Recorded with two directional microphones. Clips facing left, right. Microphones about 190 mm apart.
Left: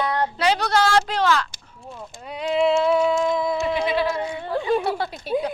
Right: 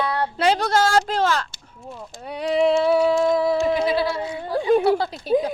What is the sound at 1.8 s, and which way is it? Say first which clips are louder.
Speech: right 1 dB; centre (ahead or behind).